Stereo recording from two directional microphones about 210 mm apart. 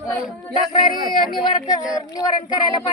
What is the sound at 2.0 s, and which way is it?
Speech, 20° left (ahead or behind).